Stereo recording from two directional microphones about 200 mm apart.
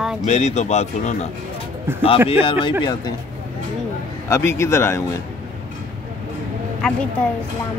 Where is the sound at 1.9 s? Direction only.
10° right (ahead or behind).